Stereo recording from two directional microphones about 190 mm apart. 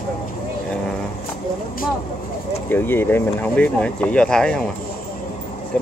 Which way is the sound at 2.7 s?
10° left (ahead or behind).